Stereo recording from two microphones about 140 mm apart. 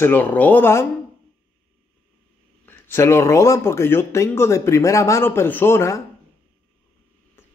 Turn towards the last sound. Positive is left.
turn(degrees=20)  # may be behind; listen again after turning